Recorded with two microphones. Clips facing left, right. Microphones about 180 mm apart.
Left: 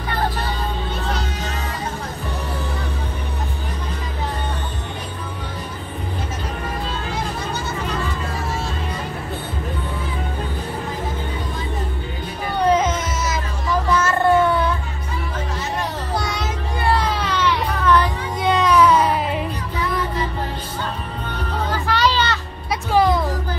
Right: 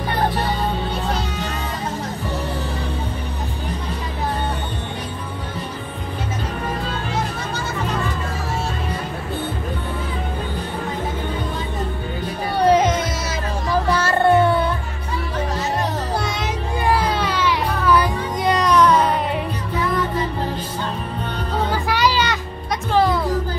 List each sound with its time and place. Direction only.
12.5 s a sound: 35° right (ahead or behind)
13.8 s music: 35° right (ahead or behind)
17.1 s baby cry: centre (ahead or behind)
21.8 s music: 10° right (ahead or behind)